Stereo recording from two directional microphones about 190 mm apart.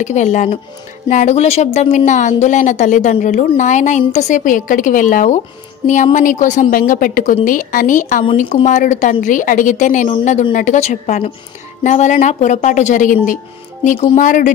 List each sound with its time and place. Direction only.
0.0 s a woman's voice: 40° left (ahead or behind)